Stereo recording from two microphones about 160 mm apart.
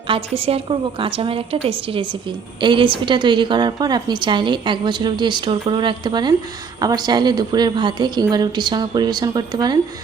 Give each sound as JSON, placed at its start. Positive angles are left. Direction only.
{"t": 0.1, "sound": "a woman's voice", "side_deg": -40}